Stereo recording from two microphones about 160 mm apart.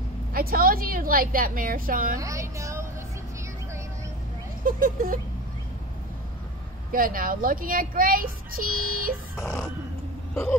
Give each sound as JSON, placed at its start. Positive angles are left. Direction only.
{"t": 0.3, "sound": "speech", "side_deg": -65}
{"t": 2.1, "sound": "a woman's voice", "side_deg": -20}
{"t": 4.6, "sound": "speech", "side_deg": -60}
{"t": 6.9, "sound": "speech", "side_deg": -60}
{"t": 9.4, "sound": "a sound", "side_deg": 15}